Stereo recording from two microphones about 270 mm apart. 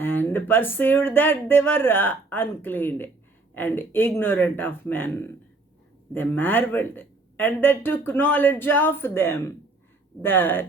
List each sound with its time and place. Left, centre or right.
0.0 s speech: centre